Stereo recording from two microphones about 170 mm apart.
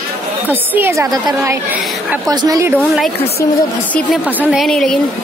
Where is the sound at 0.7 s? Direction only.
15° right (ahead or behind).